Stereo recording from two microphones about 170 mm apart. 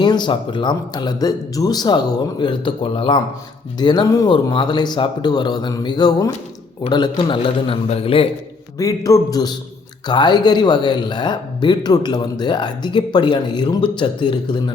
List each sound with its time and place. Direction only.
0.0 s a man's voice: 25° left (ahead or behind)
8.8 s speech: 20° left (ahead or behind)